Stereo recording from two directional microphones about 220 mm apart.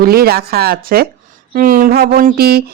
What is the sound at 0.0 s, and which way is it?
Speech, 45° right (ahead or behind).